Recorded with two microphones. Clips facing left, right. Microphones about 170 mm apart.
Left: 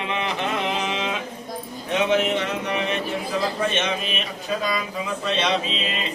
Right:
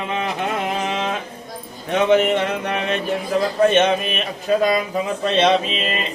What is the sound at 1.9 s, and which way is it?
Speech, 55° right (ahead or behind).